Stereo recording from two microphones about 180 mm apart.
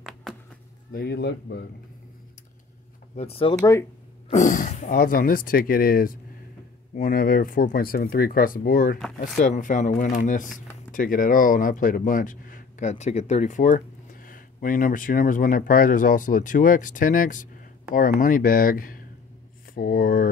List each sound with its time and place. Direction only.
0.0 s a sound: centre (ahead or behind)
0.9 s speech: 65° left (ahead or behind)
3.2 s speech: 30° left (ahead or behind)
4.3 s speech: 45° left (ahead or behind)